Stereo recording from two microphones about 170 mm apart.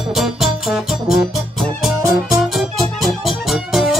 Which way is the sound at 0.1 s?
Centre (ahead or behind).